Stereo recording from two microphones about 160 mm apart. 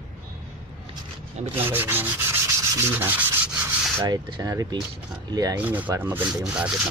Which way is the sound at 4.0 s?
25° right (ahead or behind).